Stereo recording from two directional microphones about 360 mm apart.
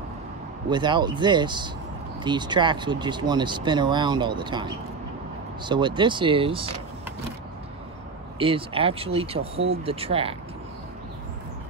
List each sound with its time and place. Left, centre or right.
0.7 s speech: centre
8.4 s speech: centre